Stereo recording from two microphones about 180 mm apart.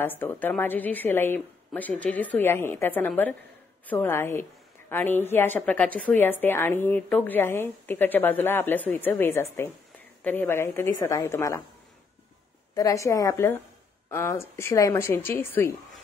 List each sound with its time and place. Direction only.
0.0 s a woman's voice: 10° left (ahead or behind)
12.7 s a woman's voice: 20° left (ahead or behind)